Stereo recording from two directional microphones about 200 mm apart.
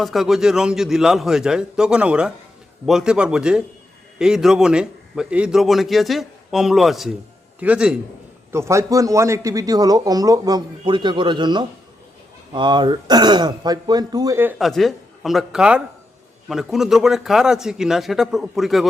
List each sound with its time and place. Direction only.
0.0 s a man's voice: centre (ahead or behind)
14.6 s a man's voice: centre (ahead or behind)